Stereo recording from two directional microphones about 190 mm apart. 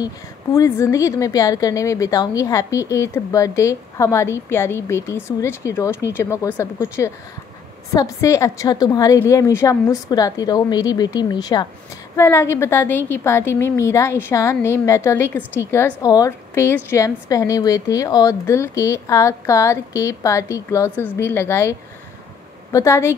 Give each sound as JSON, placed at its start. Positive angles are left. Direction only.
{"t": 0.6, "sound": "a woman's voice", "side_deg": 15}